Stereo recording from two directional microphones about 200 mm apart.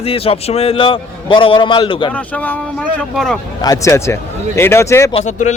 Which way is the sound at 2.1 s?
5° left (ahead or behind).